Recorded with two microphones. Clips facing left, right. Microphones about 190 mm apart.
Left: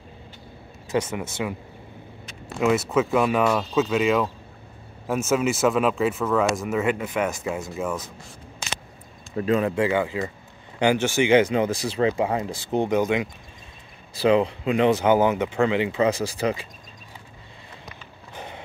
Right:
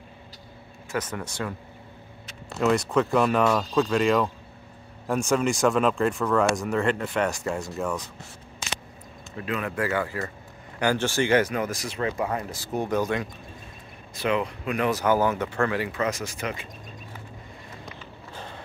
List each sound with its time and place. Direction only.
0.9 s speech: 10° left (ahead or behind)
2.6 s speech: 5° left (ahead or behind)
9.4 s speech: 30° left (ahead or behind)
14.1 s speech: 30° left (ahead or behind)
18.3 s a sound: 15° left (ahead or behind)